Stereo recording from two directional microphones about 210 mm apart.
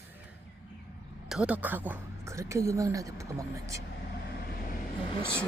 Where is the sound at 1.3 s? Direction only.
5° right (ahead or behind).